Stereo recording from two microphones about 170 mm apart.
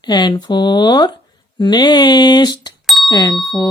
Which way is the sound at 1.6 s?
25° left (ahead or behind).